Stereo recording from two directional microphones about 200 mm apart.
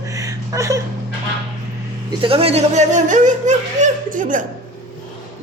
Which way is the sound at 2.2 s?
30° right (ahead or behind).